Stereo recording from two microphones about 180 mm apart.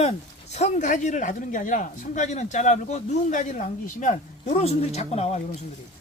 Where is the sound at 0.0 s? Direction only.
40° left (ahead or behind).